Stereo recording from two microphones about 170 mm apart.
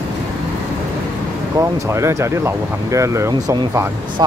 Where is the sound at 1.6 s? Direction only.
15° right (ahead or behind).